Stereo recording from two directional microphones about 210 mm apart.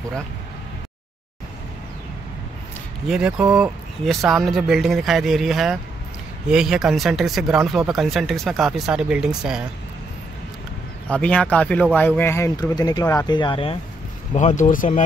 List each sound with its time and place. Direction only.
3.1 s speech: 5° right (ahead or behind)
11.1 s speech: 5° left (ahead or behind); by 13.7 s 25° left (ahead or behind)
14.3 s speech: 35° left (ahead or behind)